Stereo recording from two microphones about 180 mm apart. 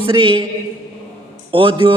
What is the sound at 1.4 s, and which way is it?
Speech, 30° right (ahead or behind).